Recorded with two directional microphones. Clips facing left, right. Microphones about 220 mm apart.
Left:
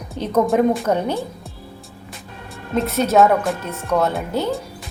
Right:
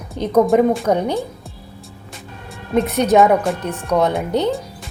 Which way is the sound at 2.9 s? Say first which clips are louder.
Right 1 dB; 15° right (ahead or behind).